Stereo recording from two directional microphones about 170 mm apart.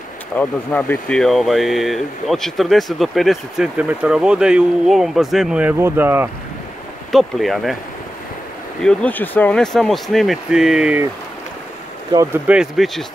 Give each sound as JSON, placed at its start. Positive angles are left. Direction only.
{"t": 0.4, "sound": "speech", "side_deg": 10}
{"t": 7.1, "sound": "speech", "side_deg": 0}
{"t": 8.8, "sound": "speech", "side_deg": 10}
{"t": 12.4, "sound": "speech", "side_deg": -5}